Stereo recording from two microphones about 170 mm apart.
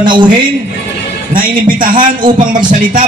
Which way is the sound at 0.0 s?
25° right (ahead or behind).